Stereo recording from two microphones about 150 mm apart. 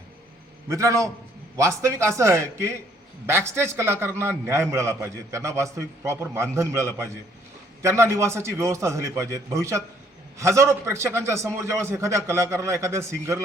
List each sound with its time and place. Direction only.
0.7 s a man's voice: 20° right (ahead or behind)